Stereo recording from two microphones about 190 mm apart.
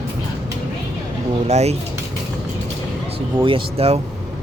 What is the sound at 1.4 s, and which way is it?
Speech, 35° right (ahead or behind).